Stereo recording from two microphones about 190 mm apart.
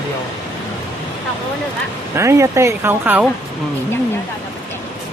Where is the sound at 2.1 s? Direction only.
15° right (ahead or behind).